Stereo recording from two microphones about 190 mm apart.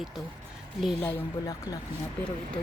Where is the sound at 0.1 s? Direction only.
Centre (ahead or behind).